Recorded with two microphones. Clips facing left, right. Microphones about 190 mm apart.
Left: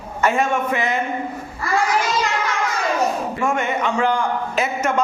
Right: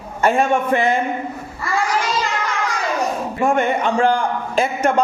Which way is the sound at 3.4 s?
35° right (ahead or behind).